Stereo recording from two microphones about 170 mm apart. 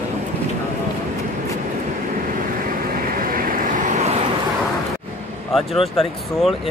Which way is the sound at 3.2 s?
55° right (ahead or behind).